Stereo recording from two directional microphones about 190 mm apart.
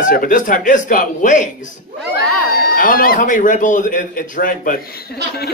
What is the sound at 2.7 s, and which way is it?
A man's voice, 50° left (ahead or behind).